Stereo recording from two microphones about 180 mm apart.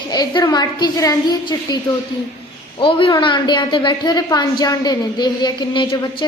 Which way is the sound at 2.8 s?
30° left (ahead or behind).